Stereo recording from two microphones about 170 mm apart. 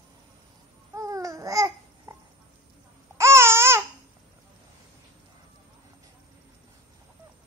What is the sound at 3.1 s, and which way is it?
Babbling, 15° right (ahead or behind).